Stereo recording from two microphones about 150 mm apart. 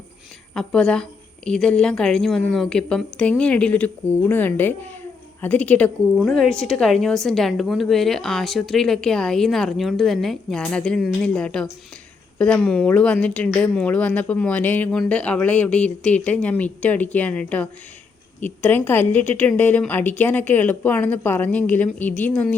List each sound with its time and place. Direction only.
0.5 s a woman's voice: 5° left (ahead or behind)